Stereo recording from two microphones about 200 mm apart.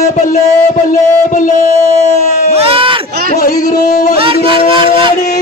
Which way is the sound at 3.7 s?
40° left (ahead or behind).